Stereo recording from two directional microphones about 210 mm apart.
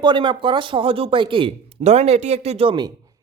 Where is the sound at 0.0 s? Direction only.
20° right (ahead or behind).